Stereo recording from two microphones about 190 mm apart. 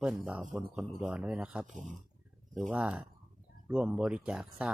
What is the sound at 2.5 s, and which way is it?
Speech, 5° right (ahead or behind).